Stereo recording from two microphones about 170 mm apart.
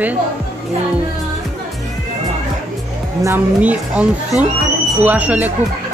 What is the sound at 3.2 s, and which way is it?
A woman's voice, 10° right (ahead or behind).